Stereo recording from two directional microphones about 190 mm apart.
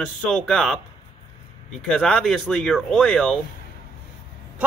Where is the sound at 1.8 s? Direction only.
5° left (ahead or behind).